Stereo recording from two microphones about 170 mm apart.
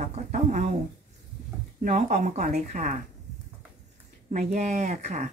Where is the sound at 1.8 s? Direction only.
45° right (ahead or behind).